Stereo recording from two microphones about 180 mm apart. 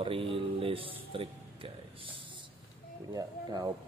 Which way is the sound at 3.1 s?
20° right (ahead or behind).